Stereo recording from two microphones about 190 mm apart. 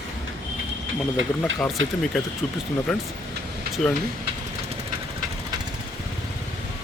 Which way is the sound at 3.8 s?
5° left (ahead or behind).